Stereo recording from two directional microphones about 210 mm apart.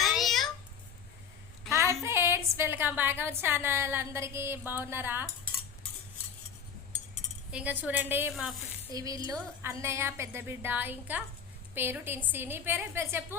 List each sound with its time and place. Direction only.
0.0 s a sound: centre (ahead or behind)
1.7 s a woman's voice: 15° right (ahead or behind)
7.5 s a woman's voice: 5° right (ahead or behind)
8.9 s a woman's voice: 15° right (ahead or behind)